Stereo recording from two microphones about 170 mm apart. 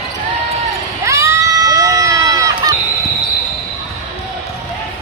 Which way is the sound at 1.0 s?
15° right (ahead or behind).